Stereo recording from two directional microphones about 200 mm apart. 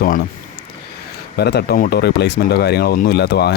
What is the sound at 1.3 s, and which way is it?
Speech, 55° left (ahead or behind).